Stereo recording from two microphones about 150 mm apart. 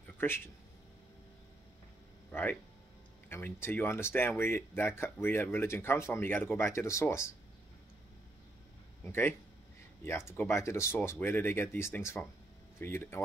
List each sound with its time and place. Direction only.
0.2 s speech: 15° left (ahead or behind)
2.3 s speech: 15° left (ahead or behind)
9.0 s speech: 15° left (ahead or behind)
10.3 s speech: 15° left (ahead or behind)